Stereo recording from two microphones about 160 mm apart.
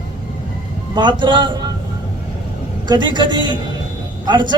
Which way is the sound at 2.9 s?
30° right (ahead or behind).